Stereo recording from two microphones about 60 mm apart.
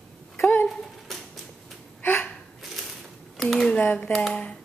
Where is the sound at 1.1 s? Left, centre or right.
Centre.